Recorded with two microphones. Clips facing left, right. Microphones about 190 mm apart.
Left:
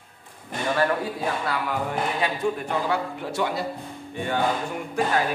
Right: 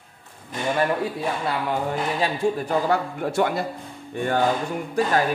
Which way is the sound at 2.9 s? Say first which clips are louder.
Right 4 dB; 50° right (ahead or behind).